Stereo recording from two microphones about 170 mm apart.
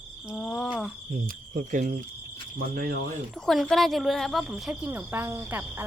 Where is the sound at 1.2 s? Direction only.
55° right (ahead or behind).